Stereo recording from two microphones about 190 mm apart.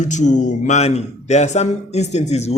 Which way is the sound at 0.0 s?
40° left (ahead or behind).